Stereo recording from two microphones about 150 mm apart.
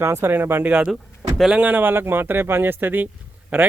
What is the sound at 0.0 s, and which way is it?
Speech, 15° right (ahead or behind).